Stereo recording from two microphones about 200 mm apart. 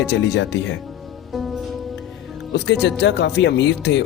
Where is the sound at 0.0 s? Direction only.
60° left (ahead or behind).